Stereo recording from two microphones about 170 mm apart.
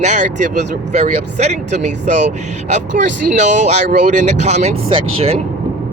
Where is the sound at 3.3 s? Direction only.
45° right (ahead or behind).